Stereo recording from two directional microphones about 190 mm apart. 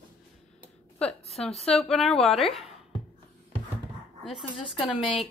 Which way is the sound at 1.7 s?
Centre (ahead or behind).